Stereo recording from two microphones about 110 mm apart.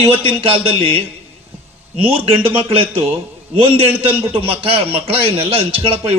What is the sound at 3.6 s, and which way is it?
A man's voice, 55° right (ahead or behind).